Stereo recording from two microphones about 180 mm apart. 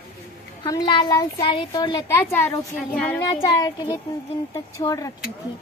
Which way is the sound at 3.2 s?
25° left (ahead or behind).